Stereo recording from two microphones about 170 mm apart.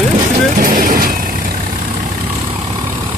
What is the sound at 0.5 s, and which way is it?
Speech, 55° right (ahead or behind).